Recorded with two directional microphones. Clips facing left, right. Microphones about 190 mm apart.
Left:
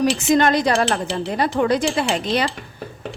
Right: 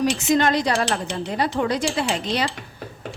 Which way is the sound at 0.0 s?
50° left (ahead or behind).